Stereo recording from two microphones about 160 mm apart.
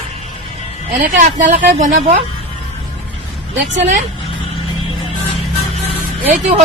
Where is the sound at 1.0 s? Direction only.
55° right (ahead or behind).